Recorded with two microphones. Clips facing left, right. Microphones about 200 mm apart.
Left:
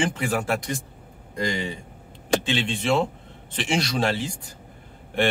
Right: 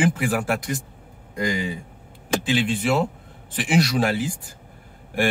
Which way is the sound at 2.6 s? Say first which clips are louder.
Right 1 dB; 25° left (ahead or behind).